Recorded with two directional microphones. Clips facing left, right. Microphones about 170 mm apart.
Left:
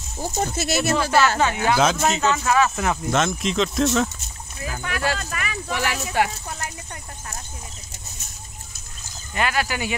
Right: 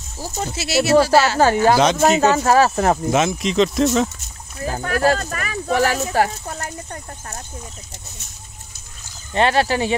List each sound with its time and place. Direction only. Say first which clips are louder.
0.6 s speech: right 6 dB; 50° left (ahead or behind)
0.9 s speech: right 7 dB; 35° right (ahead or behind)
3.1 s speech: right 3 dB; centre (ahead or behind)
4.6 s speech: right 7 dB; 40° right (ahead or behind)
9.3 s speech: right 7 dB; 30° right (ahead or behind)